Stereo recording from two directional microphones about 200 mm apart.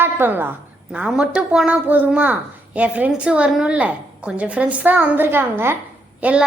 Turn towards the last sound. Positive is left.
turn(degrees=-5)  # may be behind; listen again after turning